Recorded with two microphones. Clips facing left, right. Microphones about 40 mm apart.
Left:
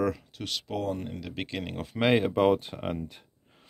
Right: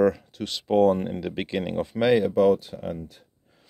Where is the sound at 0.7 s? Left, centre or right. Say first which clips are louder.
Right 13 dB; right.